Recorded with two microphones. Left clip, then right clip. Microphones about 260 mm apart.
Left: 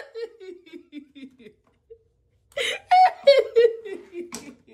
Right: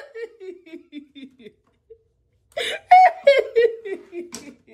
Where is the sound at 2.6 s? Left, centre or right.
Centre.